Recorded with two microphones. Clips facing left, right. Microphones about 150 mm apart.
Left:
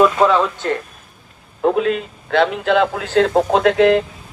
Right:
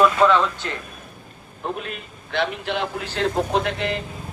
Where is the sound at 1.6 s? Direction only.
90° left.